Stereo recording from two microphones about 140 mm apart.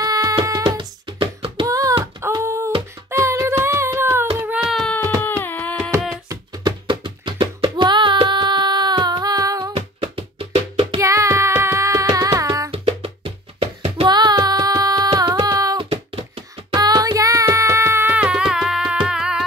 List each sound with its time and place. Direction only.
0.0 s music: 25° right (ahead or behind)
1.7 s a sound: 25° right (ahead or behind)
3.1 s music: 20° right (ahead or behind)
4.6 s baby cry: centre (ahead or behind)
5.2 s a sound: 15° left (ahead or behind)
6.2 s music: 30° right (ahead or behind)
9.8 s music: 40° right (ahead or behind)
11.0 s music: 20° right (ahead or behind)
12.7 s music: 45° right (ahead or behind)
14.0 s child singing: 30° right (ahead or behind)
15.1 s music: 25° right (ahead or behind)
15.8 s a sound: 45° right (ahead or behind)
16.7 s music: 25° right (ahead or behind); by 19.4 s 5° right (ahead or behind)